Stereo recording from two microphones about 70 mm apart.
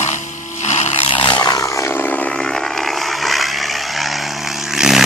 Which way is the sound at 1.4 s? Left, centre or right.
Left.